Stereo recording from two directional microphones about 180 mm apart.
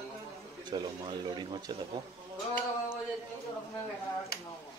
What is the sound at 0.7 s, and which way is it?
Speech, 25° right (ahead or behind).